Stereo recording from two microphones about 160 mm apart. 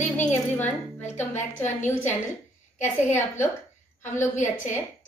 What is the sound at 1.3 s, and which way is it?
Speech, 50° left (ahead or behind).